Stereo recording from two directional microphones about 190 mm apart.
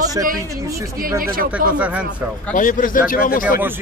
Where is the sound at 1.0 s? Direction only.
50° right (ahead or behind).